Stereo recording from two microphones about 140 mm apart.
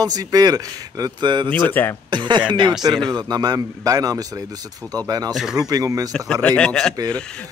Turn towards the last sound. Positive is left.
turn(degrees=5)  # may be behind; listen again after turning